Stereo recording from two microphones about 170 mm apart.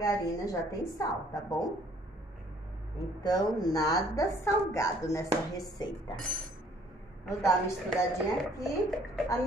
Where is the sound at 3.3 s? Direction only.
20° left (ahead or behind).